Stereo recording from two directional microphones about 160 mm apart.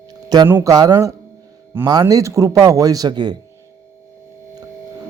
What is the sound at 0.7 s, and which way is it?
Speech, 25° right (ahead or behind).